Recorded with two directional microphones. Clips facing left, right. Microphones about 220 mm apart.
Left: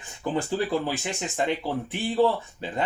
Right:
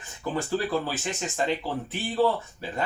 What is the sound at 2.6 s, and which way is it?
Speech, 20° left (ahead or behind).